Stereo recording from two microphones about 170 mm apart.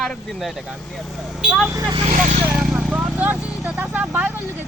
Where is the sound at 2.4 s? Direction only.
5° right (ahead or behind).